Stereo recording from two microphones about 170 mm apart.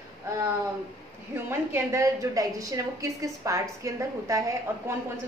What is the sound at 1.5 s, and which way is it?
A woman's voice, 15° right (ahead or behind).